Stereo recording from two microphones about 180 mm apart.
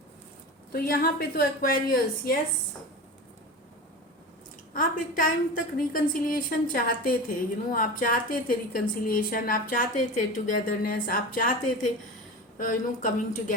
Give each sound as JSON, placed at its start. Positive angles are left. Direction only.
{"t": 0.7, "sound": "a woman's voice", "side_deg": 55}
{"t": 4.7, "sound": "a woman's voice", "side_deg": 50}